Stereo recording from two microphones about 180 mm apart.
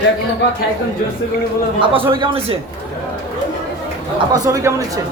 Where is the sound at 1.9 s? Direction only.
30° right (ahead or behind).